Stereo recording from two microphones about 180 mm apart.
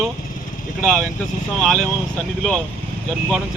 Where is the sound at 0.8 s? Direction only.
5° left (ahead or behind).